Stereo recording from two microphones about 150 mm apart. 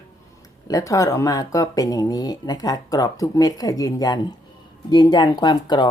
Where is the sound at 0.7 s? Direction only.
20° left (ahead or behind).